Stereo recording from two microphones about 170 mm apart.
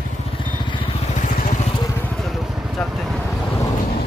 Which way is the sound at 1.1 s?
50° left (ahead or behind).